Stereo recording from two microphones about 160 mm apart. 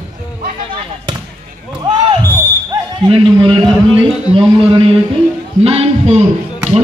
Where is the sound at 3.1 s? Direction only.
35° right (ahead or behind).